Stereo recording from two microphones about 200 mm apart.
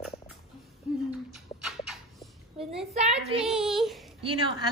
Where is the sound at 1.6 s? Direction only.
Centre (ahead or behind).